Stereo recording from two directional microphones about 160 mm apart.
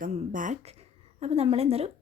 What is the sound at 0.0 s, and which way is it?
A woman's voice, 55° right (ahead or behind).